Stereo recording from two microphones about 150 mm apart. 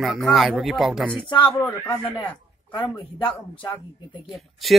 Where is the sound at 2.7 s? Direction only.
35° left (ahead or behind).